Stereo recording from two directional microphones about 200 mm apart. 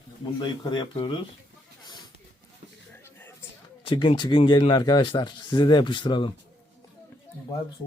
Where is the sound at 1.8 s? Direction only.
20° left (ahead or behind).